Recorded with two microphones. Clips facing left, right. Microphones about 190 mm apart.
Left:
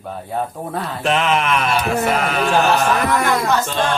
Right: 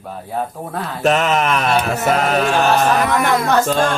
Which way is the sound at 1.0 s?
45° right (ahead or behind).